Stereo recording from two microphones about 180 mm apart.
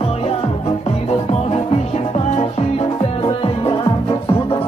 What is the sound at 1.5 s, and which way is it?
Music, 35° left (ahead or behind).